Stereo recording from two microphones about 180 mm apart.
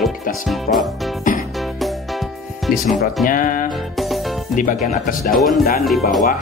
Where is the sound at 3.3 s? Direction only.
50° left (ahead or behind).